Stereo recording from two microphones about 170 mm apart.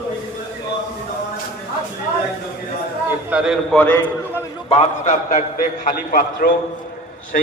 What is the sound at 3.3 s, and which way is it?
Speech, 5° right (ahead or behind).